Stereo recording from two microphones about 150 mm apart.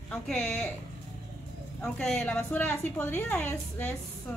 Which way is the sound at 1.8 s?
5° left (ahead or behind).